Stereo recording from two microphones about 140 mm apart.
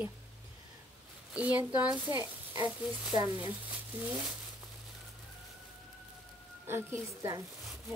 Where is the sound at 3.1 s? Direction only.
30° right (ahead or behind).